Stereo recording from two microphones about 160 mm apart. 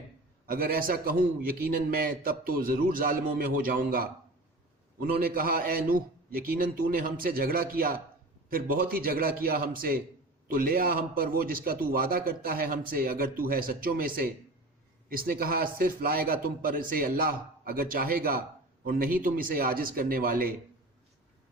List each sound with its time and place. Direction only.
0.4 s a man's voice: 65° right (ahead or behind)